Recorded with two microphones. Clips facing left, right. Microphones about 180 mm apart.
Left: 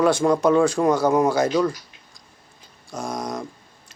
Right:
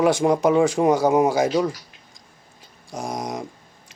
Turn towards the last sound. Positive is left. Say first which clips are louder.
# even
turn(degrees=-15)  # may be behind; listen again after turning